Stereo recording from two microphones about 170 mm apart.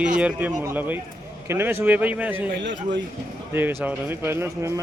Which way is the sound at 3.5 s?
15° right (ahead or behind).